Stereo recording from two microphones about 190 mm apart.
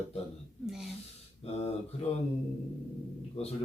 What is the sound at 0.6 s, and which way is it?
Speech, centre (ahead or behind).